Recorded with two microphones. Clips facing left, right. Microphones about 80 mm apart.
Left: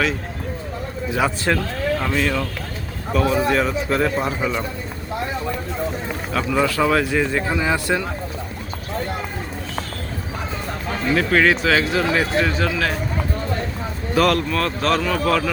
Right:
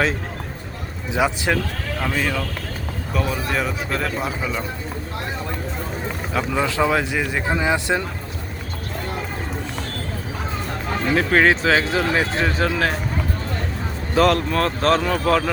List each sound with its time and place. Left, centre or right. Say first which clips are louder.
1.1 s speech: even; centre
2.0 s a man's voice: left 2 dB; centre
6.3 s speech: left 2 dB; centre
11.1 s speech: even; right
14.2 s speech: right 1 dB; right